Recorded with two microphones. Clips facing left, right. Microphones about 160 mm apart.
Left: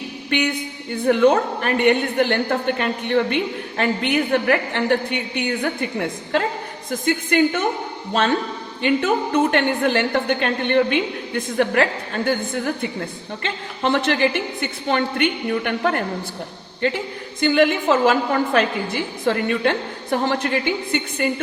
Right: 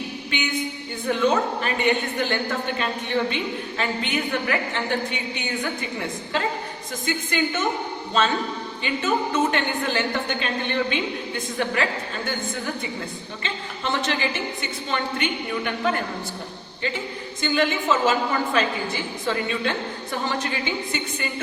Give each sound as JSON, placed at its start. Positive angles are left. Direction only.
{"t": 0.3, "sound": "a woman's voice", "side_deg": 65}
{"t": 8.8, "sound": "a woman's voice", "side_deg": 60}
{"t": 13.4, "sound": "a woman's voice", "side_deg": 65}